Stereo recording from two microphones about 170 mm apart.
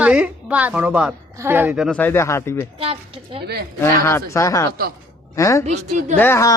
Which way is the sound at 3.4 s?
70° right (ahead or behind).